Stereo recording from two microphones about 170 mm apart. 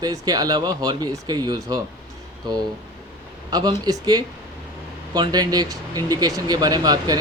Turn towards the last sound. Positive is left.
turn(degrees=-25)  # may be behind; listen again after turning